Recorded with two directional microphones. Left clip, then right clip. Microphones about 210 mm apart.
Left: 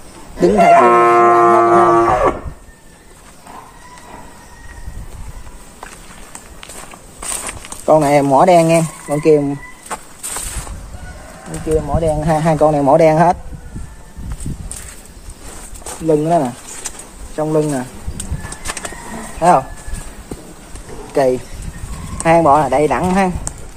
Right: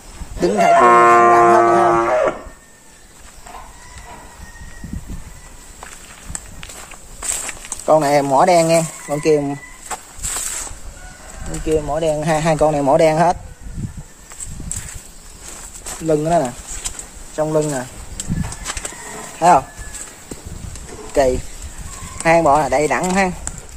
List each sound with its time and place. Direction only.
0.4 s livestock: centre (ahead or behind)
0.7 s livestock: 20° left (ahead or behind)
7.2 s speech: centre (ahead or behind)
11.9 s speech: 30° right (ahead or behind); by 13.4 s 5° right (ahead or behind)
16.1 s speech: 15° right (ahead or behind)
21.1 s a sound: 10° right (ahead or behind)
22.2 s speech: centre (ahead or behind)